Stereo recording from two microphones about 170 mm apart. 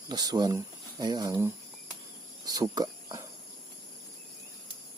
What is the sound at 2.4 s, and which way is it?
Cricket, 20° right (ahead or behind).